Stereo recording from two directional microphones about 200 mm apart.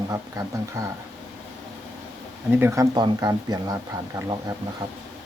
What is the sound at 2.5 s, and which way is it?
Speech, 10° right (ahead or behind).